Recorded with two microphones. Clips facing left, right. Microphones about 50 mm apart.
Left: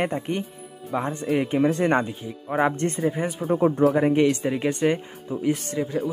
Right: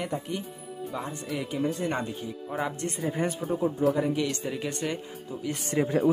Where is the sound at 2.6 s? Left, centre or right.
Left.